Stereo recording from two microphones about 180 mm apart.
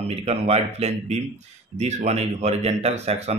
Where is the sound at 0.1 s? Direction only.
35° right (ahead or behind).